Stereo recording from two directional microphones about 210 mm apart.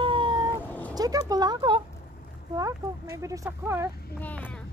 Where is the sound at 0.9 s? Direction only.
20° right (ahead or behind).